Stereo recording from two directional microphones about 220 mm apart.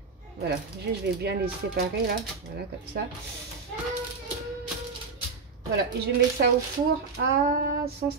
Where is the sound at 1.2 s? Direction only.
45° right (ahead or behind).